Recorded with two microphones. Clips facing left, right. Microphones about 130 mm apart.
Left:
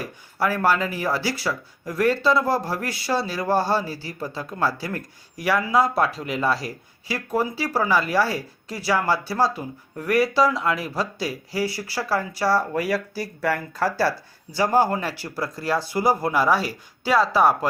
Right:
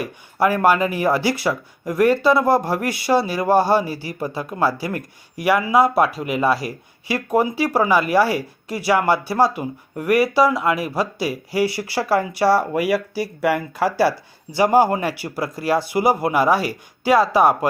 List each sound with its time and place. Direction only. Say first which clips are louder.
0.0 s speech: right 6 dB; 15° right (ahead or behind)